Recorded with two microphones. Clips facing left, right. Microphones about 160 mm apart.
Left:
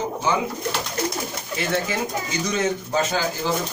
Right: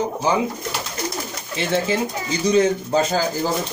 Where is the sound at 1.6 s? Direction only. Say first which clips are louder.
Right 4 dB; 30° right (ahead or behind).